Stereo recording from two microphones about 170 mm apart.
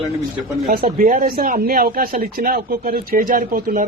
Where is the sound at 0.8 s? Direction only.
50° right (ahead or behind).